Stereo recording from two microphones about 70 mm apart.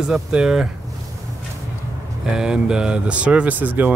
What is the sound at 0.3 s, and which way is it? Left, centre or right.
Speech, centre.